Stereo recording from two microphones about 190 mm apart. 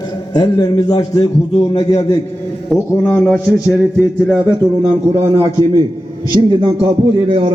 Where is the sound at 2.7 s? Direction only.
Centre (ahead or behind).